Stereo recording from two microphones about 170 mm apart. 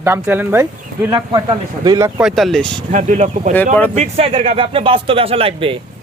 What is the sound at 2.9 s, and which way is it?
Speech, 45° right (ahead or behind).